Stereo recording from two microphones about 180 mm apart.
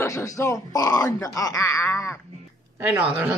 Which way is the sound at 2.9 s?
10° right (ahead or behind).